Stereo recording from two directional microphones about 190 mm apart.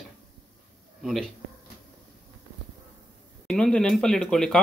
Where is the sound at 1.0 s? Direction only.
Centre (ahead or behind).